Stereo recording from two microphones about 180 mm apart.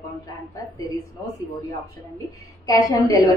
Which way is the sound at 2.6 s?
20° left (ahead or behind).